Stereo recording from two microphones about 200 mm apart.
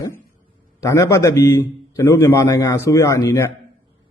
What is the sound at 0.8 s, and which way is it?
A man's voice, 15° left (ahead or behind).